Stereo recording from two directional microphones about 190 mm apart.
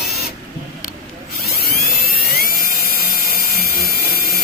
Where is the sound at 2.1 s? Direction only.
50° left (ahead or behind).